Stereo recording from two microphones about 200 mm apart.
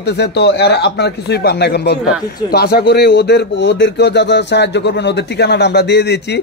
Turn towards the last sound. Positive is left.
turn(degrees=55)  # may be behind; listen again after turning